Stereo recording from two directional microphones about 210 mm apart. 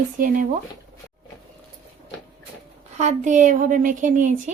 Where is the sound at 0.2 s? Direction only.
40° right (ahead or behind).